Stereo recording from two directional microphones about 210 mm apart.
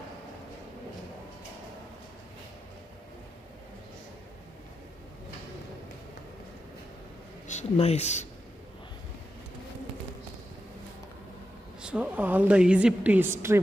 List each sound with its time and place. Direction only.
7.4 s speech: 30° left (ahead or behind)
11.8 s a woman's voice: 5° right (ahead or behind)